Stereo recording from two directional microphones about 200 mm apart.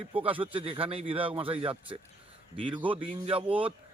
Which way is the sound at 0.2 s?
25° right (ahead or behind).